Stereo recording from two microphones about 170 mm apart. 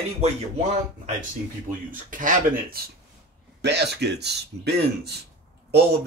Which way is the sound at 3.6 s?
80° right.